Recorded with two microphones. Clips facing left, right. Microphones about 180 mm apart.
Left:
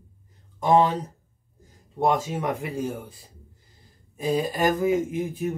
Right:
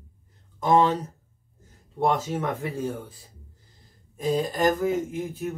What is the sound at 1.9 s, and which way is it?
A man's voice, 15° left (ahead or behind).